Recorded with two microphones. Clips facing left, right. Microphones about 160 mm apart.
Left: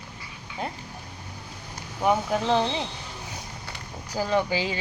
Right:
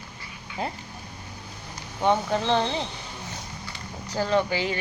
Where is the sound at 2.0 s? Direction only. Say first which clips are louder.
Even; 5° left (ahead or behind).